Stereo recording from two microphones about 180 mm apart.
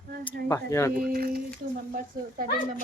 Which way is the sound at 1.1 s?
55° right (ahead or behind).